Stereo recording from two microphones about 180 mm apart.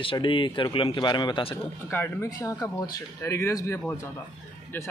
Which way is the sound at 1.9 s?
15° left (ahead or behind).